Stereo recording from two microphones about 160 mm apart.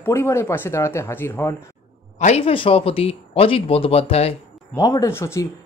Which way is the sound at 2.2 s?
45° left (ahead or behind).